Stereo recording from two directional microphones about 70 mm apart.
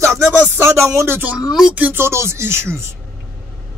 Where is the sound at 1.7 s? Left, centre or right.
Right.